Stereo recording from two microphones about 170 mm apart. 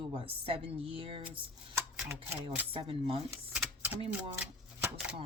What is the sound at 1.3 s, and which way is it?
Speech, 15° right (ahead or behind).